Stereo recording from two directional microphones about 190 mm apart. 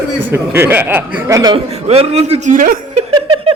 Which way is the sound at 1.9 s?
35° right (ahead or behind).